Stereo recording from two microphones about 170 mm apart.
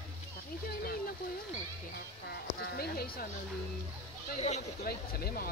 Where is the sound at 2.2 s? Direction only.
65° left (ahead or behind).